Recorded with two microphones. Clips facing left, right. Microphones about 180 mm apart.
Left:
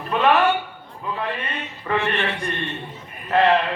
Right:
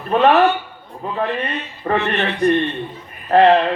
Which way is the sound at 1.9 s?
40° right (ahead or behind).